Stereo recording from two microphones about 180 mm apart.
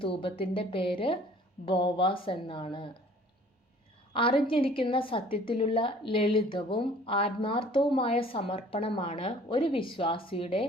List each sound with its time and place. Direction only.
0.0 s a woman's voice: 30° left (ahead or behind)
4.1 s a woman's voice: 30° left (ahead or behind)